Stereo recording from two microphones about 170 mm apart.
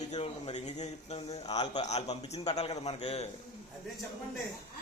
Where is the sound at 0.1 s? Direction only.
40° left (ahead or behind).